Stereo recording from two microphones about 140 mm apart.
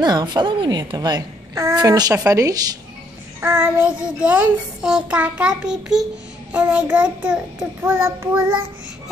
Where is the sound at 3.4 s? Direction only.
15° right (ahead or behind).